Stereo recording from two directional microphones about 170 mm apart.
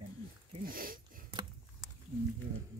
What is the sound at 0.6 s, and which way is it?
Speech, 55° right (ahead or behind).